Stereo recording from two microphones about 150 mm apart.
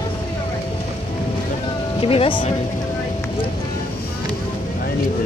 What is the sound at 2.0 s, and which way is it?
Speech, 40° left (ahead or behind).